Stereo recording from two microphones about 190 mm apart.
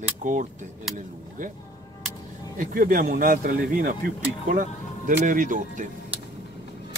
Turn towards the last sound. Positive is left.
turn(degrees=-45)  # may be behind; listen again after turning